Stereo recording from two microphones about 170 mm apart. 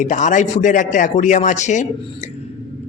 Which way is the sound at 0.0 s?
45° left (ahead or behind).